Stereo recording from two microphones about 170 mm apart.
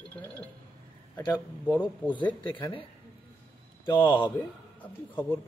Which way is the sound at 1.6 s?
10° right (ahead or behind).